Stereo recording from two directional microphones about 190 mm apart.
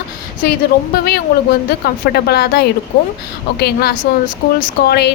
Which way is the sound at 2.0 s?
60° left (ahead or behind).